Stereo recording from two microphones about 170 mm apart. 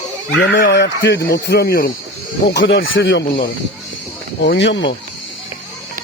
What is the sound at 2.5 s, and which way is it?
Speech, 90° left.